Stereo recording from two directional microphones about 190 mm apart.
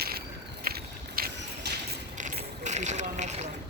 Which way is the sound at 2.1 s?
40° right (ahead or behind).